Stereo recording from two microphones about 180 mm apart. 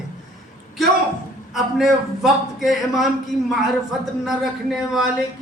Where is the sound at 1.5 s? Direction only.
Centre (ahead or behind).